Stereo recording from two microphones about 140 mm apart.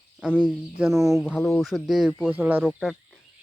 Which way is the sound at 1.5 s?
Centre (ahead or behind).